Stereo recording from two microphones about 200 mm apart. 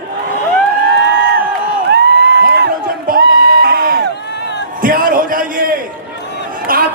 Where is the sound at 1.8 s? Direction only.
55° right (ahead or behind).